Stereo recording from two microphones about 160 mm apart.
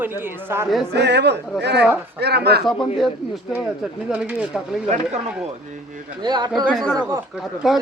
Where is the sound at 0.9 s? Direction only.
90° right.